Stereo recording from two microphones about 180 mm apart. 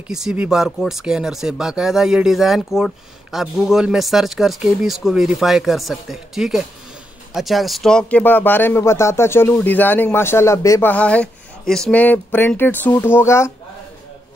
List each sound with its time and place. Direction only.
0.1 s speech: 5° right (ahead or behind); by 13.5 s 15° left (ahead or behind)